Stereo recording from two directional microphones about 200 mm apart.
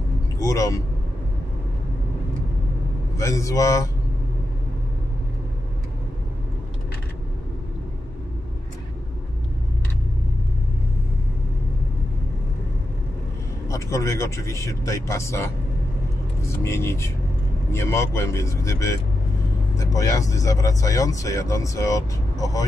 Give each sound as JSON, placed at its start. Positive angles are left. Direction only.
{"t": 0.4, "sound": "speech", "side_deg": 15}
{"t": 3.2, "sound": "speech", "side_deg": 15}
{"t": 13.7, "sound": "speech", "side_deg": 15}